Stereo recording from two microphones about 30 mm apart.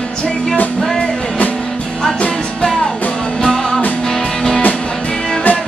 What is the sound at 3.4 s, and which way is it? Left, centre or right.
Music, centre.